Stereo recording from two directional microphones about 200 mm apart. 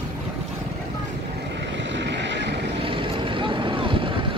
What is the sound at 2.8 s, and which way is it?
Vehicle, 25° right (ahead or behind).